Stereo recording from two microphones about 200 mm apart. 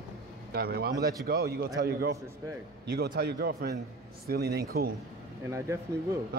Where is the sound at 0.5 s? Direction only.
50° right (ahead or behind).